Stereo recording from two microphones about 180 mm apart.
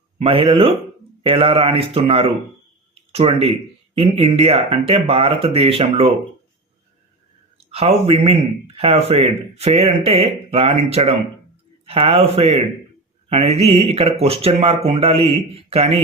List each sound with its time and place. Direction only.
0.2 s a man's voice: 30° right (ahead or behind)
7.7 s a man's voice: 35° right (ahead or behind)